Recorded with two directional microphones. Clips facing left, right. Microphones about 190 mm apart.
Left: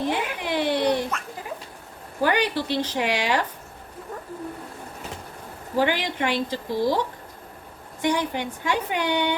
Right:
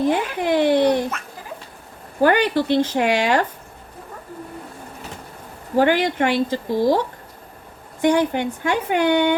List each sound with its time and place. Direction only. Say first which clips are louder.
0.1 s speech: right 7 dB; 50° right (ahead or behind)
2.2 s speech: right 6 dB; 50° right (ahead or behind)
5.7 s speech: right 6 dB; 50° right (ahead or behind)
8.0 s speech: right 7 dB; 50° right (ahead or behind)